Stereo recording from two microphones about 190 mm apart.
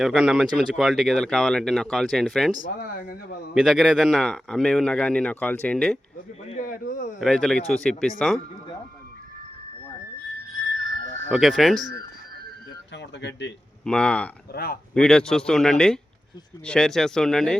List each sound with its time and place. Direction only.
0.0 s speech: centre (ahead or behind)
2.6 s speech: 50° left (ahead or behind)
3.5 s speech: centre (ahead or behind)
6.5 s speech: 45° left (ahead or behind)
7.2 s speech: 5° left (ahead or behind)
11.3 s speech: centre (ahead or behind)
12.9 s a sound: 65° left (ahead or behind)
13.8 s speech: 5° left (ahead or behind)
14.5 s speech: 55° left (ahead or behind)
14.9 s speech: 5° left (ahead or behind)